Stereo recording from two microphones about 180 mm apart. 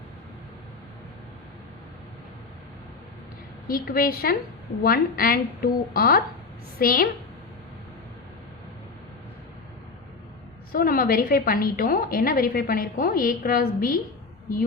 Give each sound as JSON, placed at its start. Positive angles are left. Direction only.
{"t": 3.7, "sound": "a woman's voice", "side_deg": 55}
{"t": 10.7, "sound": "a woman's voice", "side_deg": 55}